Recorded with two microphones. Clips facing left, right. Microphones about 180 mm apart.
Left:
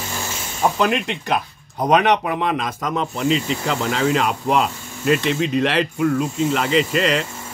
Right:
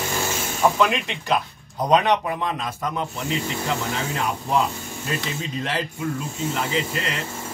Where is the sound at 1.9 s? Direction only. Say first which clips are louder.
Left 3 dB; 70° left (ahead or behind).